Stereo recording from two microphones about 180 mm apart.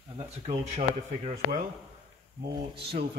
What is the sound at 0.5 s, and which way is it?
Speech, 40° right (ahead or behind).